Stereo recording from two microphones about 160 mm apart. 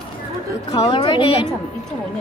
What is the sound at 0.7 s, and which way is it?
Speech, 25° left (ahead or behind).